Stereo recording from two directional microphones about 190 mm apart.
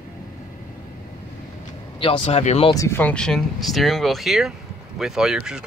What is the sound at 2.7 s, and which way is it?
Speech, 15° left (ahead or behind).